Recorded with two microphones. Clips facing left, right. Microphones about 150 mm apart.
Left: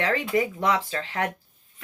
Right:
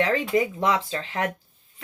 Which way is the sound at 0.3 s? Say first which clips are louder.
Right 1 dB; 25° right (ahead or behind).